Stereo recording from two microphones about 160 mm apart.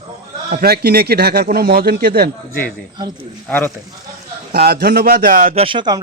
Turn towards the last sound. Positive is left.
turn(degrees=-30)  # may be behind; listen again after turning